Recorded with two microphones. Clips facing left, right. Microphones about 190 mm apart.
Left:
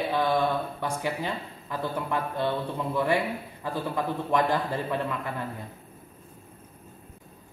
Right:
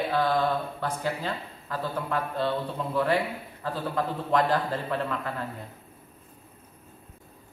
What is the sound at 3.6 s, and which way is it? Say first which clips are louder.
A woman's voice: even; 15° left (ahead or behind).